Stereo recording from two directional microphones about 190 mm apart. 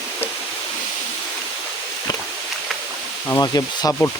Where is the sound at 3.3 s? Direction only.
15° left (ahead or behind).